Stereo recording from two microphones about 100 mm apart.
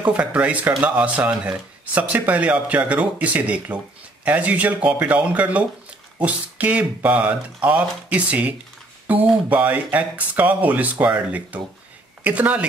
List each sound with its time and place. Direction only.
0.0 s speech: 15° right (ahead or behind)